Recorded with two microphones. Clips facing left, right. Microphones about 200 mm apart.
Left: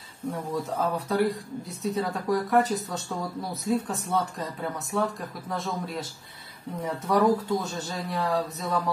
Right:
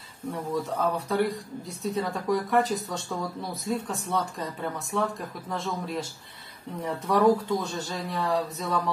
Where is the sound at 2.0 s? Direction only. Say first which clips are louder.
Even; centre (ahead or behind).